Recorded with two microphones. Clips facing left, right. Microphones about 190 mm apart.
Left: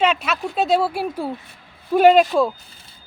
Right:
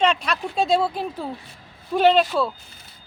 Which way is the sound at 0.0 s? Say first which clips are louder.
Left 1 dB; 5° left (ahead or behind).